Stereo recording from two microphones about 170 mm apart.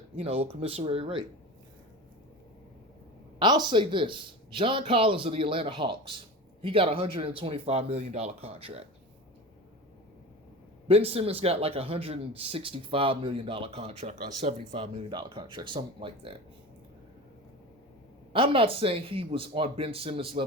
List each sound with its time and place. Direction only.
0.2 s speech: 35° right (ahead or behind)
3.3 s speech: 25° right (ahead or behind)
10.8 s speech: 35° right (ahead or behind)
18.3 s speech: 30° right (ahead or behind)